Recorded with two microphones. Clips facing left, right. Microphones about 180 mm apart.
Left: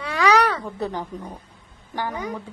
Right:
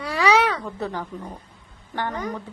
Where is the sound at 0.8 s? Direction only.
15° left (ahead or behind).